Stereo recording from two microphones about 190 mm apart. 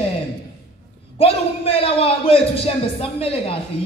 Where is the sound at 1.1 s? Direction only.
30° left (ahead or behind).